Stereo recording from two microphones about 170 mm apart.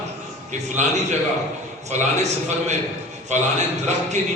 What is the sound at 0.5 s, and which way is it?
Speech, 45° right (ahead or behind).